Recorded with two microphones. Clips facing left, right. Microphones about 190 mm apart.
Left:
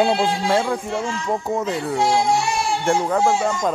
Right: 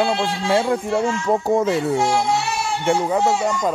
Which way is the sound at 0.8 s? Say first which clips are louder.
Right 4 dB; 35° right (ahead or behind).